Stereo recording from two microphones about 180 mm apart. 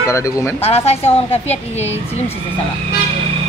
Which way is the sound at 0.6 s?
35° left (ahead or behind).